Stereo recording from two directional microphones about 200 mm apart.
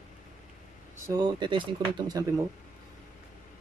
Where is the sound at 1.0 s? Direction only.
20° right (ahead or behind).